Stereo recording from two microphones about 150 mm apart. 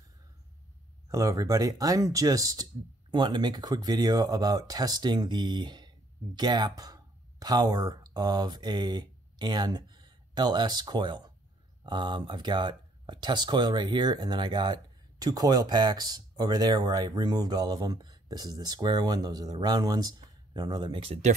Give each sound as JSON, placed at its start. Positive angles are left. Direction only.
{"t": 1.0, "sound": "speech", "side_deg": -20}